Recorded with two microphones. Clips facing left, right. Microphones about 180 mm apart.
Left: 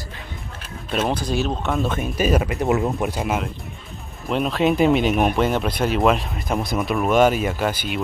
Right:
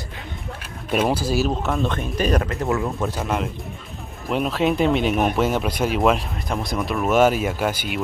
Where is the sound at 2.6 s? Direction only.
20° left (ahead or behind).